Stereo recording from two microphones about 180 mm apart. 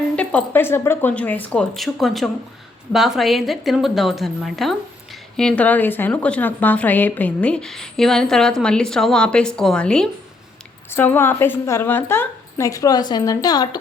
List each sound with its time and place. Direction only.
0.2 s a woman's voice: 5° left (ahead or behind)